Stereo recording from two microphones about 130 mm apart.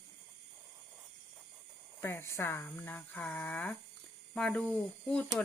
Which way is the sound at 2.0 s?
20° left (ahead or behind).